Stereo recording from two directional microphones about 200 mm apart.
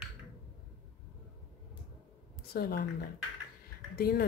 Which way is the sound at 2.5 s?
50° left (ahead or behind).